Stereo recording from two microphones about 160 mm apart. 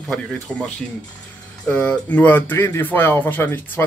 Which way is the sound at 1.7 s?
10° left (ahead or behind).